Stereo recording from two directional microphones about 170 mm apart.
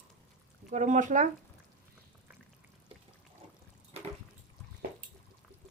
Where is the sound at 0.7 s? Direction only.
45° right (ahead or behind).